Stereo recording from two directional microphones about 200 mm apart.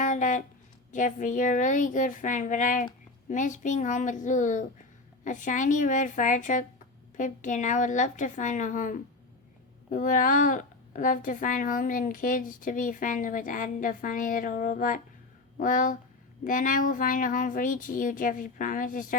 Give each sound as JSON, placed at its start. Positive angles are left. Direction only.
{"t": 0.0, "sound": "a woman's voice", "side_deg": 40}